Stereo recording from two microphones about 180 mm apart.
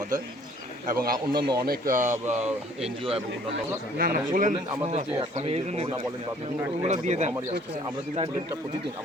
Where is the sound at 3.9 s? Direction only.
55° right (ahead or behind).